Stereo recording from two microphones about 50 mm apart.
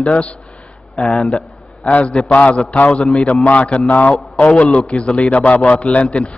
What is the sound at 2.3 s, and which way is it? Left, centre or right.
Speech, left.